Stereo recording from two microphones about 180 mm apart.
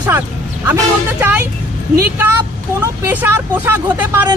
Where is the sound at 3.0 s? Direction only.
10° right (ahead or behind).